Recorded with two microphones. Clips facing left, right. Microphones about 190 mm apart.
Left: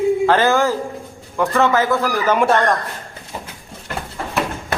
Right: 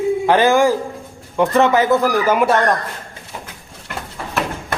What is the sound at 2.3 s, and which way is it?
Speech, 5° right (ahead or behind).